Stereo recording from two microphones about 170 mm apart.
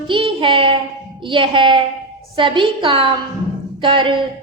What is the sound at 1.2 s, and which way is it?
A woman's voice, 30° right (ahead or behind).